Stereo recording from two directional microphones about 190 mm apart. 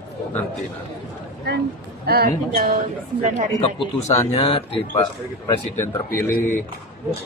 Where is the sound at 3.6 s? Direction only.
25° left (ahead or behind).